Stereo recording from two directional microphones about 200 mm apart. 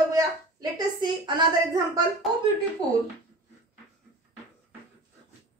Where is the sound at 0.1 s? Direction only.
20° right (ahead or behind).